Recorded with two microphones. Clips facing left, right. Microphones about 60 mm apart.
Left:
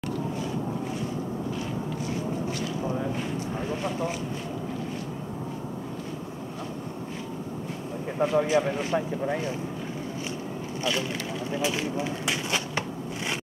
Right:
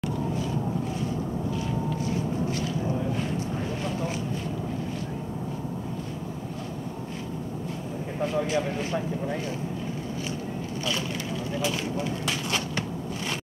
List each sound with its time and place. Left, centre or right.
8.2 s speech: left
11.5 s speech: centre